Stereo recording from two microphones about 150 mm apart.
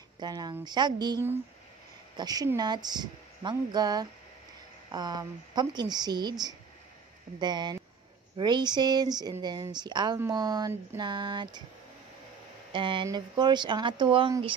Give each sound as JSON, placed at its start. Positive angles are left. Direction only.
{"t": 0.2, "sound": "speech", "side_deg": -25}
{"t": 12.7, "sound": "speech", "side_deg": -30}